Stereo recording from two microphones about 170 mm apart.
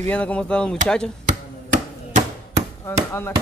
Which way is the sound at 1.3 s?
45° right (ahead or behind).